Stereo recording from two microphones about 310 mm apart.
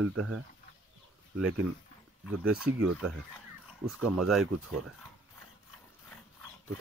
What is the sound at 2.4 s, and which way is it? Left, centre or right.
Speech, centre.